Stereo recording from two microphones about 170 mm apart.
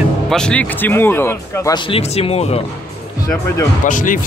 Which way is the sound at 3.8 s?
50° left (ahead or behind).